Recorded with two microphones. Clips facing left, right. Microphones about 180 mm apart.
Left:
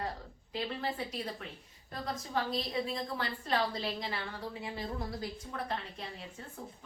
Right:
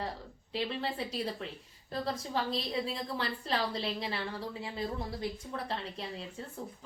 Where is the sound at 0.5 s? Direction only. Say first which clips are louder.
Right 2 dB; 30° right (ahead or behind).